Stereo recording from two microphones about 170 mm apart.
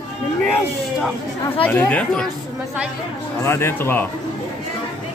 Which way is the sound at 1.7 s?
10° left (ahead or behind).